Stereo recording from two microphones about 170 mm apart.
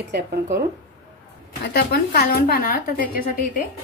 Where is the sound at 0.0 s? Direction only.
75° right (ahead or behind).